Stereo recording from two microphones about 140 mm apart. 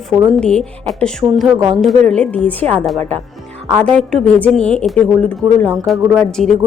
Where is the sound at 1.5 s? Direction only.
25° right (ahead or behind).